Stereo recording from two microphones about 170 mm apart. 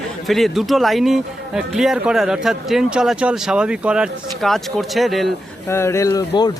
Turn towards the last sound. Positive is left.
turn(degrees=20)  # may be behind; listen again after turning